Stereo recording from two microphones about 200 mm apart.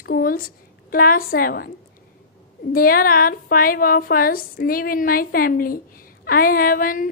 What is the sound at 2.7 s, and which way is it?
A woman's voice, 45° left (ahead or behind).